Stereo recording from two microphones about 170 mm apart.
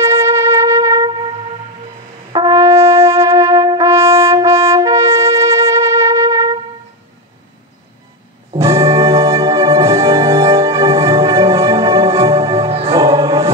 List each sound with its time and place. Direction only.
0.0 s music: 15° right (ahead or behind)
2.3 s brass instrument: 20° right (ahead or behind)
8.5 s music: 15° right (ahead or behind)
12.6 s music: 35° right (ahead or behind)
12.9 s music: 20° right (ahead or behind)